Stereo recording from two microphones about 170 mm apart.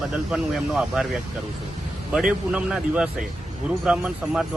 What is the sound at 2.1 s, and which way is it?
A man's voice, 5° right (ahead or behind).